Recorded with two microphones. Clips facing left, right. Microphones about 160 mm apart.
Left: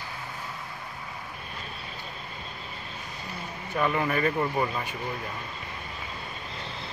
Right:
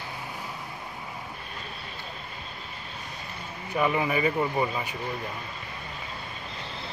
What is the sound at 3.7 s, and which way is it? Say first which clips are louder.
Speech: right 1 dB; 5° right (ahead or behind).